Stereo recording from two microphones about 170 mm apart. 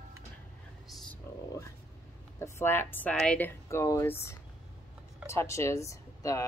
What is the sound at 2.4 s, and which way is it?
A woman's voice, 15° left (ahead or behind).